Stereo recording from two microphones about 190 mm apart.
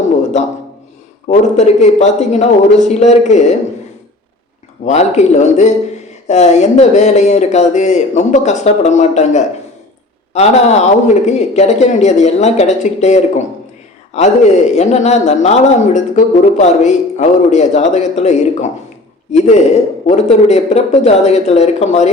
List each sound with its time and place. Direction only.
1.3 s a man's voice: 35° left (ahead or behind)
4.9 s a man's voice: 35° left (ahead or behind)